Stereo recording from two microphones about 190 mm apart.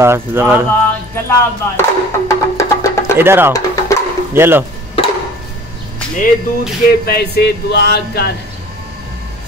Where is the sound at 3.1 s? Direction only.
10° right (ahead or behind).